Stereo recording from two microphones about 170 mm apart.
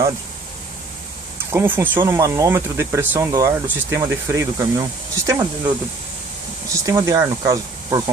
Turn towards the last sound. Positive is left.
turn(degrees=-20)  # may be behind; listen again after turning